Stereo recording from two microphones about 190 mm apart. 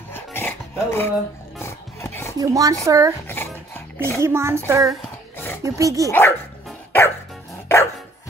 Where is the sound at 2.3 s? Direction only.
20° right (ahead or behind).